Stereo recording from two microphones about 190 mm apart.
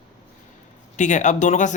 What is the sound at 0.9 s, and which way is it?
Speech, 40° left (ahead or behind).